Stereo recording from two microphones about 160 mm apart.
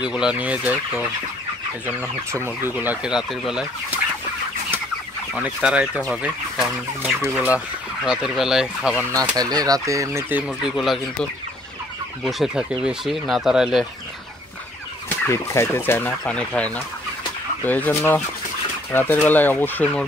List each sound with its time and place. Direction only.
0.0 s speech: 5° right (ahead or behind)
5.3 s speech: 5° right (ahead or behind)
9.3 s speech: 25° right (ahead or behind)
10.6 s speech: centre (ahead or behind)
12.2 s speech: centre (ahead or behind)
15.0 s fowl: 15° left (ahead or behind)
18.9 s speech: 10° left (ahead or behind)
19.2 s fowl: 10° left (ahead or behind)